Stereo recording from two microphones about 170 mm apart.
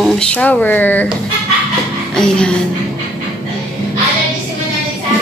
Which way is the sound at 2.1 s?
5° left (ahead or behind).